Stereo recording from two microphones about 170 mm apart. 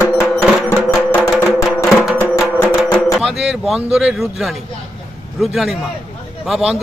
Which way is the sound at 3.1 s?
5° right (ahead or behind).